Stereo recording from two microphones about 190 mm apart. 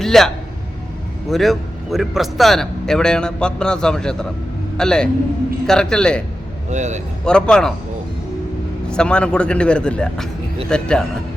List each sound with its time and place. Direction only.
0.0 s a sound: centre (ahead or behind)
1.3 s a man's voice: centre (ahead or behind)
6.7 s speech: 40° right (ahead or behind)
7.3 s a man's voice: 5° left (ahead or behind)
8.9 s a man's voice: 5° left (ahead or behind)